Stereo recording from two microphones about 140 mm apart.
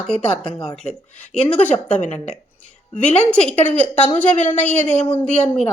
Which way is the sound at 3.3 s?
10° left (ahead or behind).